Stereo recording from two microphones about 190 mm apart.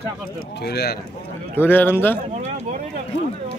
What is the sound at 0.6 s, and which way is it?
Speech, 55° left (ahead or behind).